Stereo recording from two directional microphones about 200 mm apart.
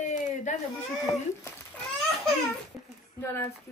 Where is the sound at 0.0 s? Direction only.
40° left (ahead or behind).